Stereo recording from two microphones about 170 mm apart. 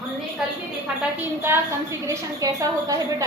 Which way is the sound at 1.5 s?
15° right (ahead or behind).